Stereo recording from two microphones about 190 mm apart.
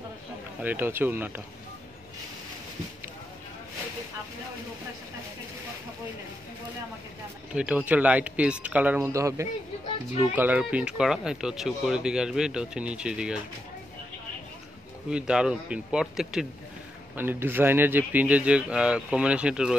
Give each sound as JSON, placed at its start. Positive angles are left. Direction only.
{"t": 0.6, "sound": "speech", "side_deg": -10}
{"t": 7.5, "sound": "speech", "side_deg": -10}
{"t": 15.0, "sound": "speech", "side_deg": -5}